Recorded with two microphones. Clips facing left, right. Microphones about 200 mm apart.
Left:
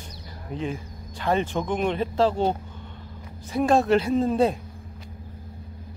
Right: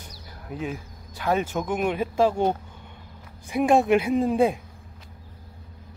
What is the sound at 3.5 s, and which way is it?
Speech, 15° right (ahead or behind).